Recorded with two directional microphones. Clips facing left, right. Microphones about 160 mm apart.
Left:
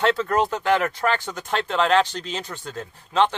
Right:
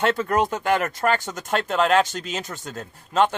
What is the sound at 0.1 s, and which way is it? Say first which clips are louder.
Speech: even; 50° right (ahead or behind).